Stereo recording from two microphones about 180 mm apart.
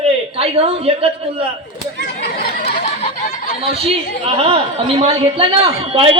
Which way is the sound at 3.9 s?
30° right (ahead or behind).